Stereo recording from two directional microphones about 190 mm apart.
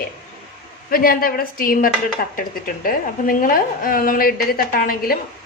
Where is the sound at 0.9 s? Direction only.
50° left (ahead or behind).